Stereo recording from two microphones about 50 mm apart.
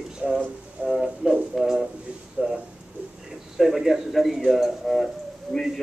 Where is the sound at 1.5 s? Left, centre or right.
Centre.